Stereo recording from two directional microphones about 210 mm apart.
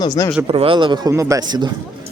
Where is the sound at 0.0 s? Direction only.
15° left (ahead or behind).